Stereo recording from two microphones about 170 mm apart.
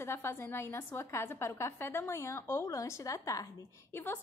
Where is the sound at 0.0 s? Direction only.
15° left (ahead or behind).